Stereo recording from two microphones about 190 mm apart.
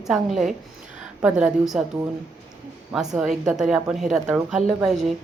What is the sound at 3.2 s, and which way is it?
Speech, 5° right (ahead or behind).